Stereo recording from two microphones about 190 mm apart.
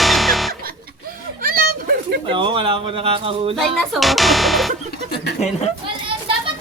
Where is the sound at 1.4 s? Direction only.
50° right (ahead or behind).